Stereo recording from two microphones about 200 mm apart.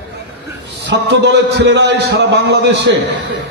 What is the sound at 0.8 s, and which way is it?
A man's voice, 60° right (ahead or behind).